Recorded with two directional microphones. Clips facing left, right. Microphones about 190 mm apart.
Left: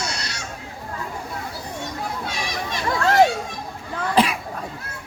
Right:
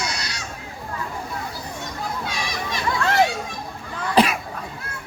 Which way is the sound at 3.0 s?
40° left (ahead or behind).